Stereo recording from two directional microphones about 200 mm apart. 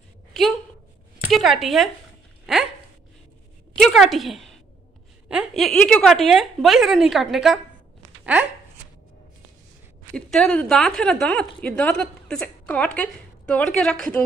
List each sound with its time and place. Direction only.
0.3 s a sound: centre (ahead or behind)
1.3 s speech: centre (ahead or behind)
3.7 s a woman's voice: centre (ahead or behind)
10.1 s a woman's voice: 5° left (ahead or behind)